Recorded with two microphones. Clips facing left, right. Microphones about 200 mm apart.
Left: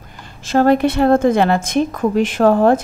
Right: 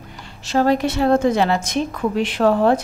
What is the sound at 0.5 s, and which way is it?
A woman's voice, 55° left (ahead or behind).